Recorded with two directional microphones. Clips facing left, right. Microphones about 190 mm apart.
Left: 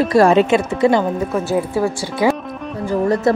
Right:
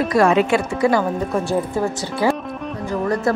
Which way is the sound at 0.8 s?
20° left (ahead or behind).